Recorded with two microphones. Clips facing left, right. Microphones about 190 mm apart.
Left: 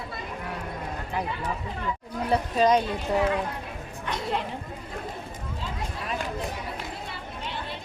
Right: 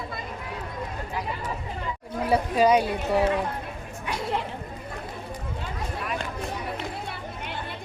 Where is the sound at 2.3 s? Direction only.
10° right (ahead or behind).